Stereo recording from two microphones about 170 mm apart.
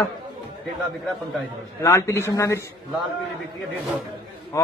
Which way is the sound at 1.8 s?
15° left (ahead or behind).